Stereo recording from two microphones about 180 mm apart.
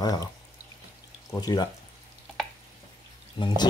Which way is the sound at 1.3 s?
20° left (ahead or behind).